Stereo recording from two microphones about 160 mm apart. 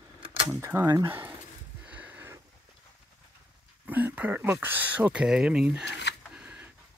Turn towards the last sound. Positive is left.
turn(degrees=-5)  # may be behind; listen again after turning